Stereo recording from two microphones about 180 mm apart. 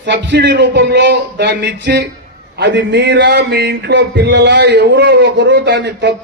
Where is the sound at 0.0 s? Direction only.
75° right (ahead or behind).